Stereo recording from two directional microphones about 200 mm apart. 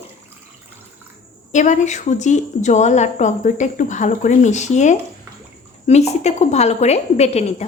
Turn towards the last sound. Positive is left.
turn(degrees=30)  # may be behind; listen again after turning